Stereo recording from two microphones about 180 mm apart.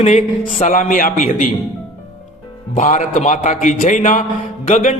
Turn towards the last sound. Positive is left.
turn(degrees=45)  # may be behind; listen again after turning